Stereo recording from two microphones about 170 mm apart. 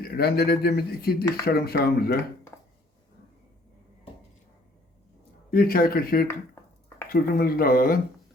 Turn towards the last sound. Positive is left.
turn(degrees=55)  # may be behind; listen again after turning